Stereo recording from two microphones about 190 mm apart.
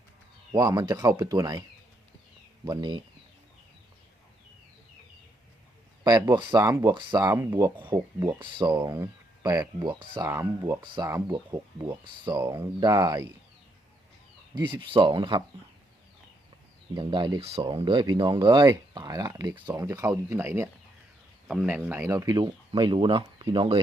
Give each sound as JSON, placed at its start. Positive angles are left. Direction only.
{"t": 0.5, "sound": "speech", "side_deg": -20}
{"t": 2.6, "sound": "speech", "side_deg": -25}
{"t": 6.1, "sound": "speech", "side_deg": -20}
{"t": 14.6, "sound": "speech", "side_deg": -25}
{"t": 16.9, "sound": "speech", "side_deg": -25}
{"t": 21.4, "sound": "speech", "side_deg": -5}